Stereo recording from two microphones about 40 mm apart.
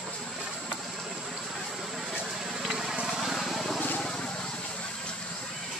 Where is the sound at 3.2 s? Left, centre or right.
Centre.